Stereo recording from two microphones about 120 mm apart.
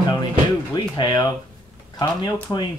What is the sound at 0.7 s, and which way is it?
Speech, 35° left (ahead or behind).